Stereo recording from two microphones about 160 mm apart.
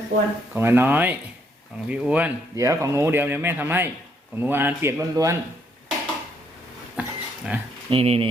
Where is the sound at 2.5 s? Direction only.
20° right (ahead or behind).